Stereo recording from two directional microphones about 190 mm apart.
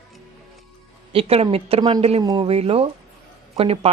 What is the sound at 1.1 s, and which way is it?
Speech, 30° right (ahead or behind).